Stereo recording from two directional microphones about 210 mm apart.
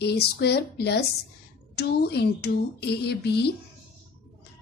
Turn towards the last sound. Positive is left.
turn(degrees=50)  # may be behind; listen again after turning